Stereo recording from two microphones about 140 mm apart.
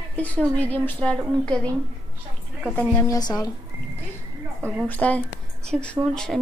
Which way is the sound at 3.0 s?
25° left (ahead or behind).